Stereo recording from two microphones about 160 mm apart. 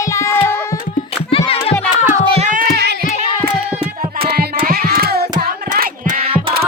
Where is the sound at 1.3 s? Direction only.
35° left (ahead or behind).